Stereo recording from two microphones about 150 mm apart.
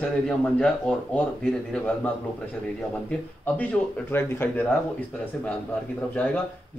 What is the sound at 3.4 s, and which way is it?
A man's voice, 10° left (ahead or behind).